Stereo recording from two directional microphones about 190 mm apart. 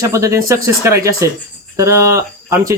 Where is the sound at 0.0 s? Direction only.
15° right (ahead or behind).